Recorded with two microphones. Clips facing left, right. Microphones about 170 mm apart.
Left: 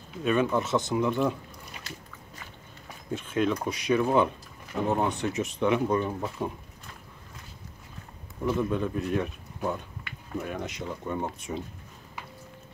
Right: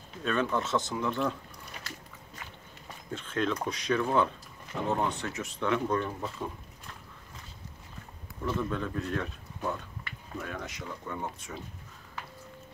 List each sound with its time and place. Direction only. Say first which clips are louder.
0.2 s speech: left 4 dB; 10° left (ahead or behind)
3.1 s speech: left 4 dB; 10° left (ahead or behind)
8.5 s speech: left 5 dB; 15° left (ahead or behind)